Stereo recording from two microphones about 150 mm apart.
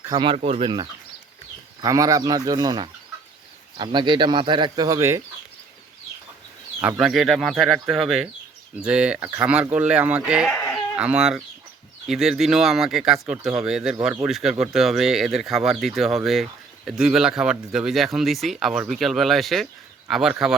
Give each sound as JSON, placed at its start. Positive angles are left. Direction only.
{"t": 0.1, "sound": "speech", "side_deg": -35}
{"t": 1.8, "sound": "speech", "side_deg": -20}
{"t": 6.8, "sound": "speech", "side_deg": -5}